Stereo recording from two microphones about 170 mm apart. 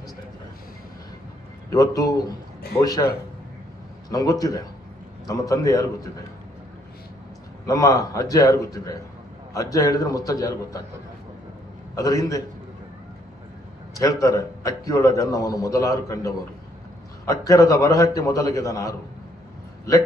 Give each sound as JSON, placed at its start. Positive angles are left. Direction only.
{"t": 1.7, "sound": "a man's voice", "side_deg": 20}
{"t": 7.6, "sound": "a man's voice", "side_deg": 20}
{"t": 11.9, "sound": "a man's voice", "side_deg": 20}
{"t": 13.9, "sound": "a man's voice", "side_deg": 20}